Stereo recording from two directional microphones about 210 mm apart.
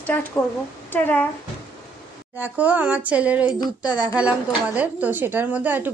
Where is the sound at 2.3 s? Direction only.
10° right (ahead or behind).